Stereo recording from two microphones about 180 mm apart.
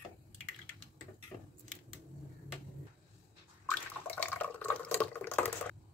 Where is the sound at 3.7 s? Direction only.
10° left (ahead or behind).